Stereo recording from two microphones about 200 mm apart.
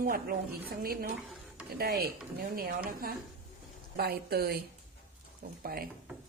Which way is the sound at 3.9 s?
50° right (ahead or behind).